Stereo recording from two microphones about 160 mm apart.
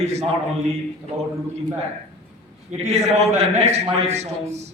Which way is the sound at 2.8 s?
45° right (ahead or behind).